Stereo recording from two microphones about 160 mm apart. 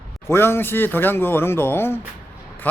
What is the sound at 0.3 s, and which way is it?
Speech, 15° left (ahead or behind).